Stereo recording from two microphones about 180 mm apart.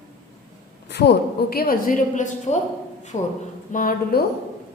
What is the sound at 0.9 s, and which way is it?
A woman's voice, 70° left (ahead or behind).